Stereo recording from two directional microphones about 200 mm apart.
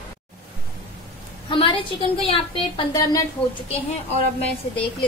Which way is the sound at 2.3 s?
20° left (ahead or behind).